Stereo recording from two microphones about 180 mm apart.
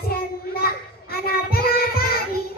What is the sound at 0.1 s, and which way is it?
Child singing, 55° left (ahead or behind).